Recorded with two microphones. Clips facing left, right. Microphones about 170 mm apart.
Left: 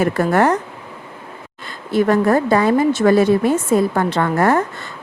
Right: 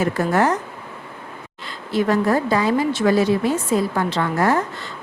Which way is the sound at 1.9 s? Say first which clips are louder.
Left 4 dB; 55° left (ahead or behind).